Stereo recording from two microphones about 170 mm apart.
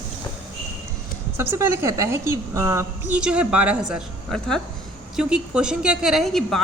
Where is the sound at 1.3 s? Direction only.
15° right (ahead or behind).